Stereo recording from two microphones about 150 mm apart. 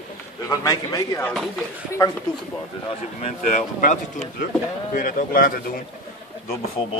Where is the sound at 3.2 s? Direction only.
55° left (ahead or behind); by 5.6 s 75° left (ahead or behind).